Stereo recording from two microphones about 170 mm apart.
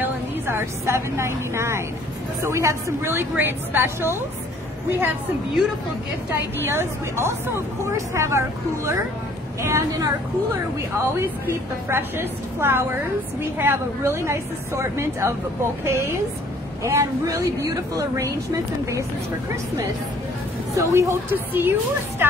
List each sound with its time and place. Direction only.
0.0 s a woman's voice: 15° right (ahead or behind)
6.3 s a woman's voice: 15° right (ahead or behind)
20.7 s a woman's voice: 15° right (ahead or behind)